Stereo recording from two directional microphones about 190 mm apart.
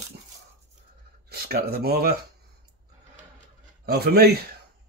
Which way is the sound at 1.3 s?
55° right (ahead or behind).